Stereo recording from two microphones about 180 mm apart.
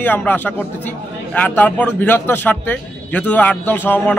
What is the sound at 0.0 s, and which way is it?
A man's voice, 10° left (ahead or behind).